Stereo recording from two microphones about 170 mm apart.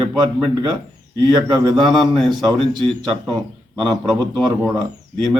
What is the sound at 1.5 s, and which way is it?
Speech, 25° right (ahead or behind).